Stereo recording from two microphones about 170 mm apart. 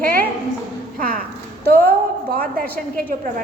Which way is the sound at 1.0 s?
55° right (ahead or behind).